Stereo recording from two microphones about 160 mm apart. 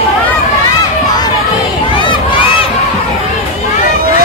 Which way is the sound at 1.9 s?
30° left (ahead or behind).